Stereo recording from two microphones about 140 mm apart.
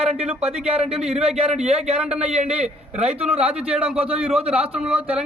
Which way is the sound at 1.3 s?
50° right (ahead or behind).